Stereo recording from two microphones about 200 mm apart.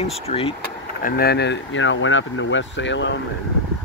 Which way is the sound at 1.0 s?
45° left (ahead or behind).